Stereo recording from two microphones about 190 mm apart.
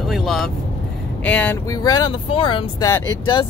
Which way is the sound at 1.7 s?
20° left (ahead or behind).